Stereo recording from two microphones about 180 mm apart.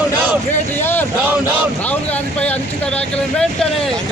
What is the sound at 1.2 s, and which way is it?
Speech, 10° right (ahead or behind).